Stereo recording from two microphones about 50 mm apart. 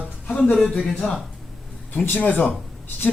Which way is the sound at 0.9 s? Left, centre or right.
Centre.